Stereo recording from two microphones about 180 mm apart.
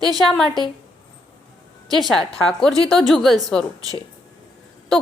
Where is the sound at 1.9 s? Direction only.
Centre (ahead or behind).